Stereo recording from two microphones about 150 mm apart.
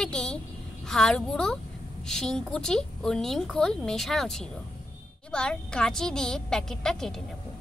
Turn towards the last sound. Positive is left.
turn(degrees=5)  # may be behind; listen again after turning